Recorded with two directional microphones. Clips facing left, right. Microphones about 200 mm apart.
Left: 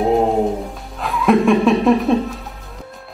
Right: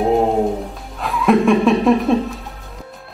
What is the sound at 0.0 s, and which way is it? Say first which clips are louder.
Music: even; centre (ahead or behind).